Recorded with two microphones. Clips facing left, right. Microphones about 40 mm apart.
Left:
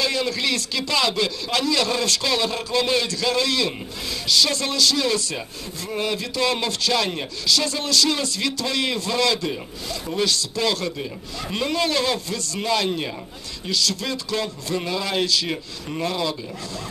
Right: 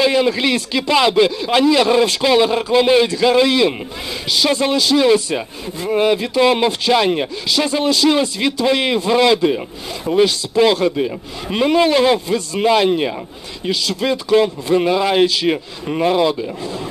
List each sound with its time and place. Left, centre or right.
0.0 s speech: right